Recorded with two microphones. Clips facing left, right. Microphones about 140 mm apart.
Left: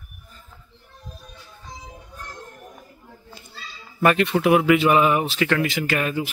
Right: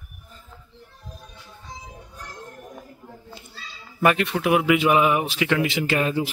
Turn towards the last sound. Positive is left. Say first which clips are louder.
# right 1 dB
turn(degrees=-25)  # may be behind; listen again after turning